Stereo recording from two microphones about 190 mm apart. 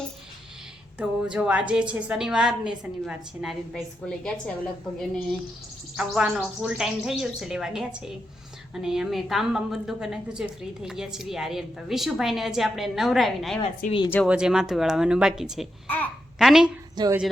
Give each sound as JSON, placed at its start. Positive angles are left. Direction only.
{"t": 0.9, "sound": "a woman's voice", "side_deg": -5}
{"t": 13.8, "sound": "speech", "side_deg": 45}
{"t": 14.3, "sound": "a woman's voice", "side_deg": -5}
{"t": 15.9, "sound": "babbling", "side_deg": 5}
{"t": 16.9, "sound": "speech", "side_deg": -20}